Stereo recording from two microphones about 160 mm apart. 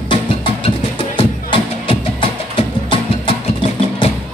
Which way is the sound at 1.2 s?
35° left (ahead or behind).